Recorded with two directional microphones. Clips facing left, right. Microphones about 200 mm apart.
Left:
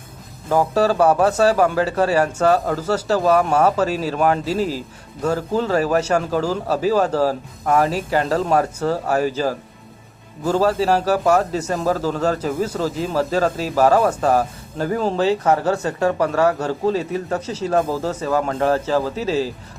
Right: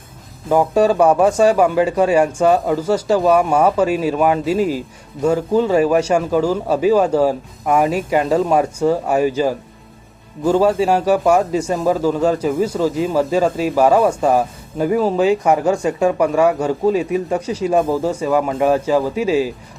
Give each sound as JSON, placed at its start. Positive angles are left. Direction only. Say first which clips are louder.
{"t": 0.5, "sound": "speech", "louder": "right 3 dB", "side_deg": -10}